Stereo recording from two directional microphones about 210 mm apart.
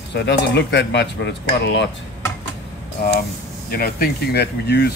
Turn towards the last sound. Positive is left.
turn(degrees=50)  # may be behind; listen again after turning